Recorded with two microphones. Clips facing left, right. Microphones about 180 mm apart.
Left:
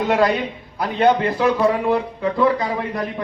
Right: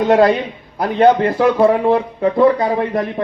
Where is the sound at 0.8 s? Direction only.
45° right (ahead or behind).